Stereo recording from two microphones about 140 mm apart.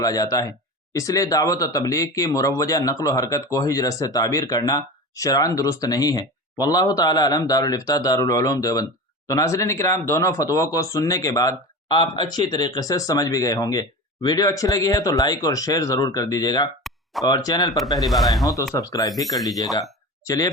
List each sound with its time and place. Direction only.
0.0 s speech: 25° left (ahead or behind)
16.9 s a sound: centre (ahead or behind)
17.2 s speech: 30° left (ahead or behind)
17.9 s speech: centre (ahead or behind)
18.7 s speech: 25° left (ahead or behind)
20.2 s speech: 25° left (ahead or behind)